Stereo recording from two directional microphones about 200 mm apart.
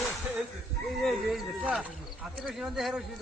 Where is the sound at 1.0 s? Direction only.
Centre (ahead or behind).